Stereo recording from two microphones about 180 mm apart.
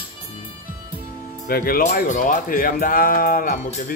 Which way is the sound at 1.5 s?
55° left (ahead or behind).